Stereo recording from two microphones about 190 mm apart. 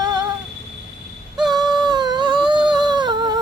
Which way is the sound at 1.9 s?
20° right (ahead or behind).